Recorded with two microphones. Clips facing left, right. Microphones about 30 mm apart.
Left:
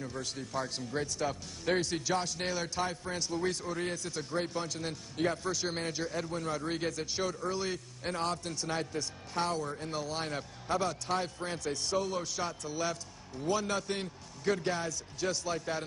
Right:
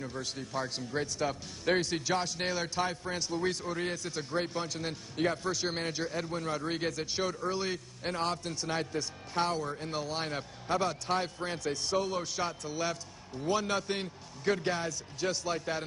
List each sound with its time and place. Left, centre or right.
0.0 s a man's voice: centre